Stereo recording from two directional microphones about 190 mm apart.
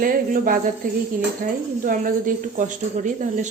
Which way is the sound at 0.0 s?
50° right (ahead or behind).